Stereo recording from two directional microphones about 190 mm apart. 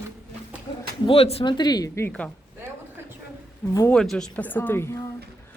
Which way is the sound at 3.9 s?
5° left (ahead or behind).